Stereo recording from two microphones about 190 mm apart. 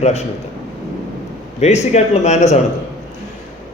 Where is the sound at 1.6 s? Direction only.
35° left (ahead or behind).